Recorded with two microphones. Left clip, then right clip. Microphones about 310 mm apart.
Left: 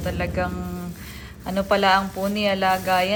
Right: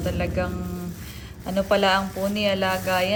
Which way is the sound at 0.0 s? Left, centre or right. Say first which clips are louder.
Left 1 dB; centre.